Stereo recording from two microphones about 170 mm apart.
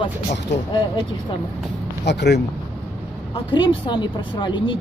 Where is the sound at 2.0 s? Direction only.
80° left.